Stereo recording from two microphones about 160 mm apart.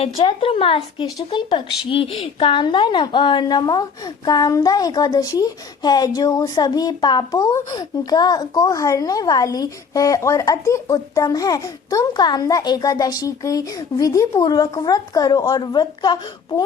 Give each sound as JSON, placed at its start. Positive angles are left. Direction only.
{"t": 0.0, "sound": "a woman's voice", "side_deg": 35}